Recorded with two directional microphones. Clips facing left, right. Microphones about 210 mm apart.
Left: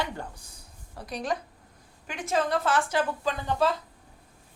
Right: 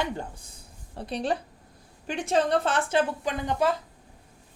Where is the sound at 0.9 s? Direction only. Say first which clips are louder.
Right 3 dB; 30° right (ahead or behind).